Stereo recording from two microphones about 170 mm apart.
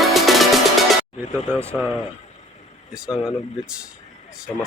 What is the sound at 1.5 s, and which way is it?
Speech, 10° right (ahead or behind).